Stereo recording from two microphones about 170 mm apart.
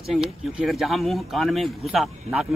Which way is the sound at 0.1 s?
Centre (ahead or behind).